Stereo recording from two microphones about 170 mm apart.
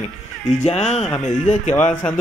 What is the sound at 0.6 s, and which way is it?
Speech, 40° left (ahead or behind).